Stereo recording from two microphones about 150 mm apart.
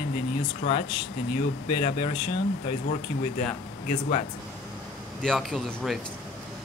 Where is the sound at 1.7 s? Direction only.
40° left (ahead or behind).